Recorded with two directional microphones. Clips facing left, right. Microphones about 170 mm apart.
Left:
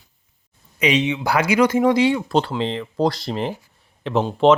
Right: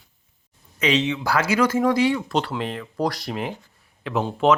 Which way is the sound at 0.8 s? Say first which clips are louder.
Left 2 dB; 15° left (ahead or behind).